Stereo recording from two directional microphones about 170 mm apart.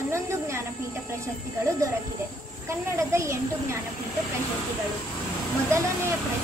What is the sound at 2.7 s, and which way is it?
Speech, 15° right (ahead or behind).